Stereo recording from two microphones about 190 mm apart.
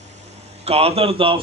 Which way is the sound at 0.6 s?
30° right (ahead or behind).